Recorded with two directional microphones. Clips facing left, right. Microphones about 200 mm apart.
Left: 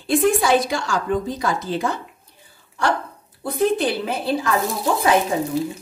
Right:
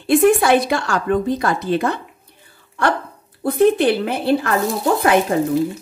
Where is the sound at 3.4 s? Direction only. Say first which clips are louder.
Right 6 dB; 60° right (ahead or behind).